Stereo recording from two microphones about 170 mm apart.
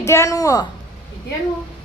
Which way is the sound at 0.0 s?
15° left (ahead or behind).